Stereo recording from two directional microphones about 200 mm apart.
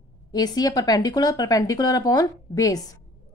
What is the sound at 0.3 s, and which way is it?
A woman's voice, 20° left (ahead or behind).